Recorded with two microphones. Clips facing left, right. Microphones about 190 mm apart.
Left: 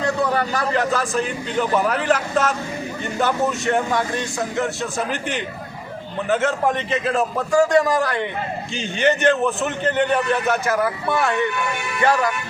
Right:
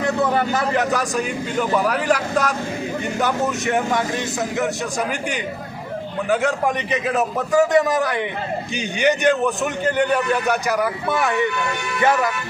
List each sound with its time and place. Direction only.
0.0 s a man's voice: 20° right (ahead or behind)
4.6 s a man's voice: 15° right (ahead or behind)